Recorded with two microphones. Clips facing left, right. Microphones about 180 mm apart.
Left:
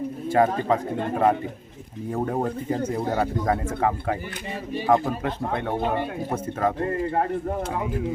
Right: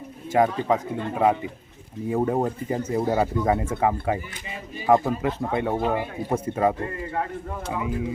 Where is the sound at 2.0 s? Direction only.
5° right (ahead or behind).